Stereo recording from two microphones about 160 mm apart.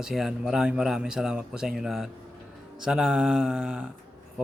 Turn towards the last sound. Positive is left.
turn(degrees=-5)  # may be behind; listen again after turning